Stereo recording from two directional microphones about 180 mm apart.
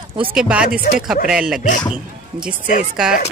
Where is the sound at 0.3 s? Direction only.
5° right (ahead or behind).